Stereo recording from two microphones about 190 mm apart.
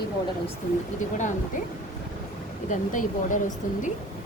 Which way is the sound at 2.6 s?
45° left (ahead or behind).